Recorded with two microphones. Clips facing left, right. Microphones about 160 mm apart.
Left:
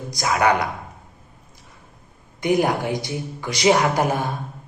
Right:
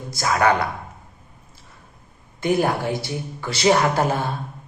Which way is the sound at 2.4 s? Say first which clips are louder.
Left 1 dB; 15° left (ahead or behind).